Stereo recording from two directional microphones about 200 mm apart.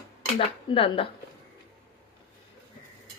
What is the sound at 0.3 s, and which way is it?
Speech, 25° left (ahead or behind).